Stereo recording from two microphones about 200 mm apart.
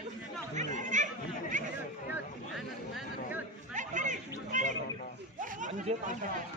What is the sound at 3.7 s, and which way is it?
Chatter, 40° right (ahead or behind).